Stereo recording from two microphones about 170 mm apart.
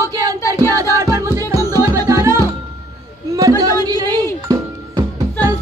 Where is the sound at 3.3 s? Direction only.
20° right (ahead or behind).